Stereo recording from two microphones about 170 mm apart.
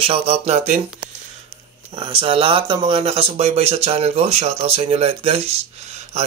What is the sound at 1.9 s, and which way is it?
Speech, 30° right (ahead or behind).